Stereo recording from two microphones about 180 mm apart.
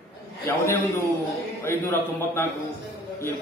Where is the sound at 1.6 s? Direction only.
15° left (ahead or behind).